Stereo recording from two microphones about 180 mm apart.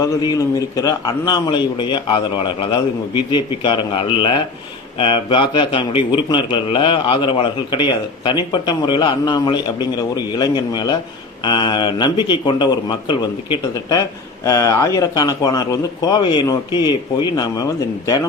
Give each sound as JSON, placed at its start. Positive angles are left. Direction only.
{"t": 0.0, "sound": "a man's voice", "side_deg": 20}